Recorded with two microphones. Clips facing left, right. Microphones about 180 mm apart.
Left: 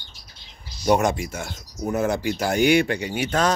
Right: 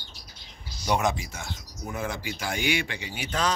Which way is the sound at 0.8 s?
45° left (ahead or behind).